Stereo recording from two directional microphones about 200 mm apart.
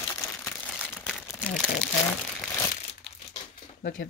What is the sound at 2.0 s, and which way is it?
Crumpling, 10° left (ahead or behind).